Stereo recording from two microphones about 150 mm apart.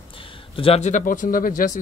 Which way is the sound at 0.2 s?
40° left (ahead or behind).